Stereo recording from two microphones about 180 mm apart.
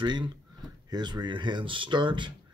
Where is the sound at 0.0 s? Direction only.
25° right (ahead or behind).